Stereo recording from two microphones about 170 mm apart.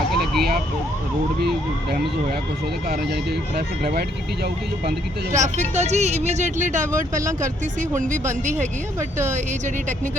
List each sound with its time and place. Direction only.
0.1 s emergency vehicle: centre (ahead or behind)
3.5 s speech: 65° right (ahead or behind)
5.4 s speech: 45° right (ahead or behind)